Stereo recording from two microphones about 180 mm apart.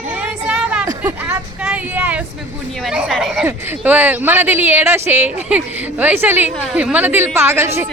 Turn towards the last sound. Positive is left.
turn(degrees=-15)  # may be behind; listen again after turning